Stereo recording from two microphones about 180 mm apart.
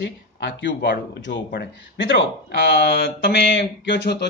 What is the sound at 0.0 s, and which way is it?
A man's voice, 75° left (ahead or behind).